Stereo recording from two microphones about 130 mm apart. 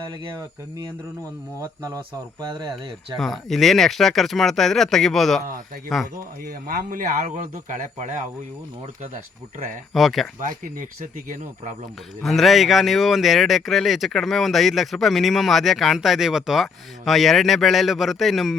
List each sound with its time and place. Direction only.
2.4 s speech: 35° right (ahead or behind)
3.2 s speech: centre (ahead or behind)
6.7 s speech: 85° right; by 8.3 s 70° right (ahead or behind)
9.9 s speech: centre (ahead or behind)
10.4 s speech: 90° right
12.2 s speech: centre (ahead or behind)